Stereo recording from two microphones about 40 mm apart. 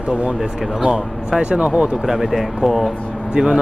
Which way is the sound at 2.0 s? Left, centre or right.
Centre.